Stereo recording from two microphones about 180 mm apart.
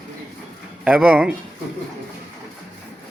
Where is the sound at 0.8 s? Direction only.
5° right (ahead or behind).